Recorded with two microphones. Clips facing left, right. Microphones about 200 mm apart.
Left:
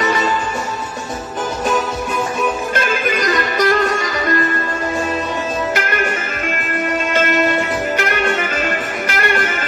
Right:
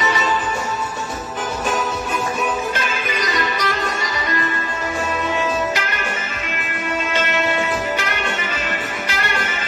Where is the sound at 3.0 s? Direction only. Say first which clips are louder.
Left 5 dB; 50° left (ahead or behind).